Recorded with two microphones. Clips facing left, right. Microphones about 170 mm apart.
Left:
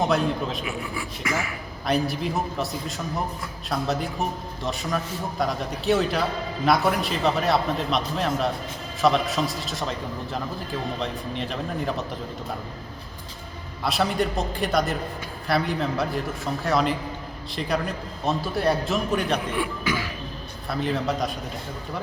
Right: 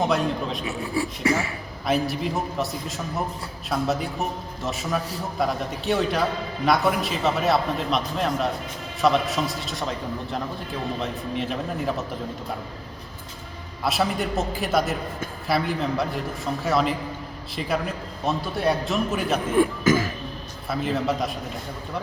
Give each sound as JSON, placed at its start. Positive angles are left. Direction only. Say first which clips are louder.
{"t": 0.0, "sound": "a man's voice", "louder": "even", "side_deg": 0}
{"t": 0.6, "sound": "speech", "louder": "right 4 dB", "side_deg": -30}
{"t": 1.9, "sound": "a man's voice", "louder": "right 1 dB", "side_deg": 0}
{"t": 11.0, "sound": "a man's voice", "louder": "right 1 dB", "side_deg": 0}
{"t": 13.8, "sound": "a man's voice", "louder": "even", "side_deg": 0}
{"t": 19.5, "sound": "speech", "louder": "right 7 dB", "side_deg": -45}
{"t": 20.7, "sound": "a man's voice", "louder": "right 1 dB", "side_deg": 0}